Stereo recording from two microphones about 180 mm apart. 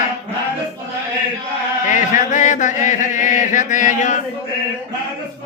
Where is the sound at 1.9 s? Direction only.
45° left (ahead or behind).